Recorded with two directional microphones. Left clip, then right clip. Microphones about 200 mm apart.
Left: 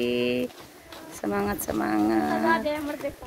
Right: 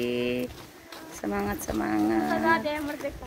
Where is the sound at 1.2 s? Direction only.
20° left (ahead or behind).